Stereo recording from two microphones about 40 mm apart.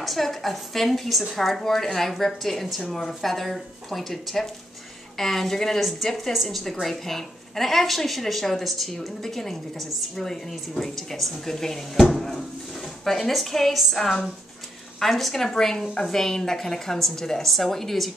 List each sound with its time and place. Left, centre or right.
0.0 s a woman's voice: centre
5.8 s a woman's voice: centre